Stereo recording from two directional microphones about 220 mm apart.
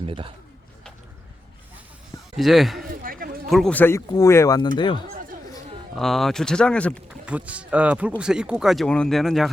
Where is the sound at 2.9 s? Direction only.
40° right (ahead or behind).